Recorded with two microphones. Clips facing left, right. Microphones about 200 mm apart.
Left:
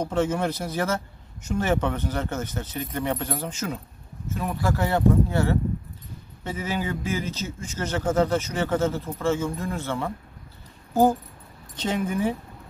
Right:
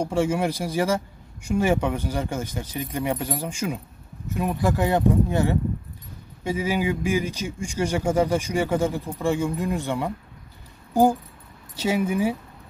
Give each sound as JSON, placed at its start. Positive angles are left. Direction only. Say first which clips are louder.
{"t": 0.0, "sound": "a man's voice", "louder": "right 1 dB", "side_deg": -10}